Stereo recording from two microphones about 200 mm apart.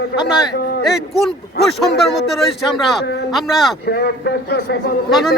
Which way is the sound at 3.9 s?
55° left (ahead or behind).